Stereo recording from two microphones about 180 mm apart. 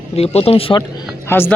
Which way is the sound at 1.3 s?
10° left (ahead or behind).